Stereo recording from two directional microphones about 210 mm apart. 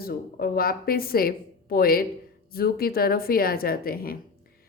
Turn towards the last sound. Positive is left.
turn(degrees=45)  # may be behind; listen again after turning